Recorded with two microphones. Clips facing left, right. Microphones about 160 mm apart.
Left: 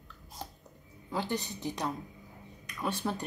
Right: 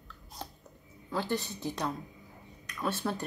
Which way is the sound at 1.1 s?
15° left (ahead or behind).